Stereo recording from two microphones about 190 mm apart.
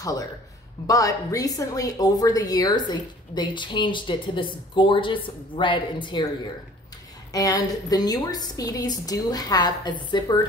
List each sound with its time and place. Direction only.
0.0 s a man's voice: 20° left (ahead or behind)
7.3 s speech: 20° left (ahead or behind)